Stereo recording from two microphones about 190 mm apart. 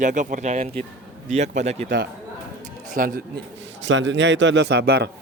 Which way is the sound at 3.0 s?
50° right (ahead or behind).